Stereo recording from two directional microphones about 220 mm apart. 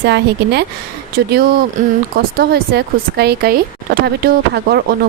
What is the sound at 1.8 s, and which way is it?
Speech, 35° right (ahead or behind).